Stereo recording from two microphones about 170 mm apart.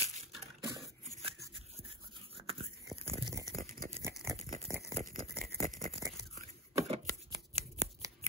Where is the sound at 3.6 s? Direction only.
55° right (ahead or behind).